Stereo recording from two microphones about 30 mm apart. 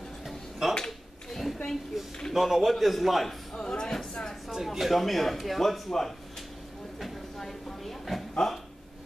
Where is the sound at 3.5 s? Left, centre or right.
Left.